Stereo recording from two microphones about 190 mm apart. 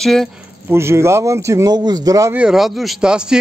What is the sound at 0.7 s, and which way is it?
Speech, 15° right (ahead or behind).